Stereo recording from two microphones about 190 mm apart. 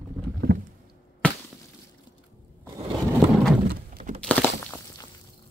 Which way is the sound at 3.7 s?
40° right (ahead or behind).